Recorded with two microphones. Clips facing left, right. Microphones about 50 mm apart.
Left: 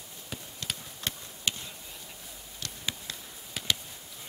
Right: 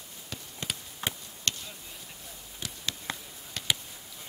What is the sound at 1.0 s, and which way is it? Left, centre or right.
Chop, right.